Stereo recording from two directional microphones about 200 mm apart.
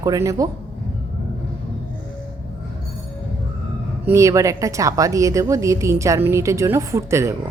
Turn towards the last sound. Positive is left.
turn(degrees=-15)  # may be behind; listen again after turning